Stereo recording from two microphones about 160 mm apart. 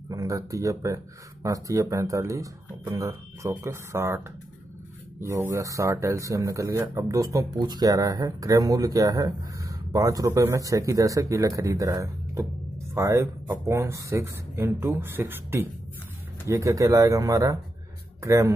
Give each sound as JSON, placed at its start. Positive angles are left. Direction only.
{"t": 0.1, "sound": "speech", "side_deg": -20}
{"t": 5.2, "sound": "speech", "side_deg": -20}